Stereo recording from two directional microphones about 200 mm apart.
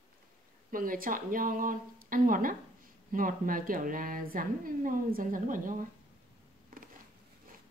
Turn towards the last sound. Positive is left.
turn(degrees=-40)  # may be behind; listen again after turning